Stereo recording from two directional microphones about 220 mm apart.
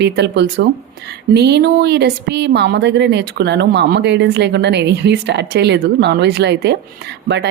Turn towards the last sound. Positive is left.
turn(degrees=-50)  # may be behind; listen again after turning